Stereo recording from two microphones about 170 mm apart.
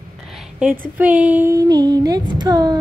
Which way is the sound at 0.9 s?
10° right (ahead or behind).